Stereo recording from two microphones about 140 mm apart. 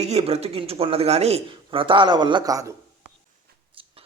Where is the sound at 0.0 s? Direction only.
50° right (ahead or behind); by 2.7 s 25° right (ahead or behind).